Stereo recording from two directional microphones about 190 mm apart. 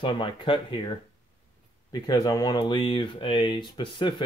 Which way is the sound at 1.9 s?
20° left (ahead or behind).